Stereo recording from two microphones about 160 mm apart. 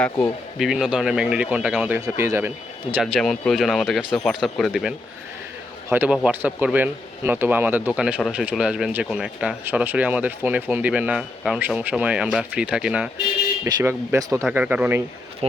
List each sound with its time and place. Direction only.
0.6 s speech: centre (ahead or behind)
2.1 s speech: 15° right (ahead or behind)
3.0 s speech: centre (ahead or behind)
13.7 s speech: 20° right (ahead or behind)
14.5 s speech: 10° right (ahead or behind)